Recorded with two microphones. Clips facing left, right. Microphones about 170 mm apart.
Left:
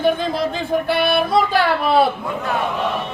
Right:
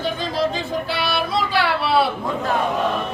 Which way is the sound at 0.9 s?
55° left (ahead or behind).